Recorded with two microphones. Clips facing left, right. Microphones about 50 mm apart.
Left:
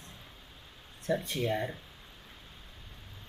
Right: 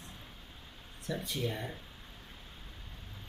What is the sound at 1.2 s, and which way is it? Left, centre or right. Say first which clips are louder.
Speech: left 3 dB; left.